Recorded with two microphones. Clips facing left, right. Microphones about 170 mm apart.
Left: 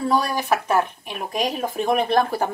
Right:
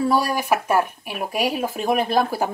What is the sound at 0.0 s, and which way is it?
Speech, 10° right (ahead or behind).